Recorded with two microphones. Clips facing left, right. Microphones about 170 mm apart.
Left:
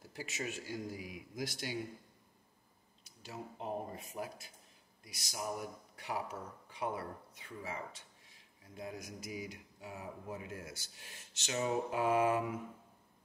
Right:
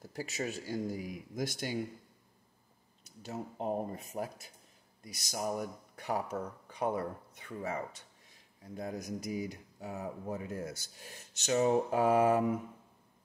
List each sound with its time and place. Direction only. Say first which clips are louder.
0.1 s speech: right 5 dB; 40° right (ahead or behind)
3.2 s speech: right 6 dB; 45° right (ahead or behind)
7.3 s speech: right 7 dB; 50° right (ahead or behind)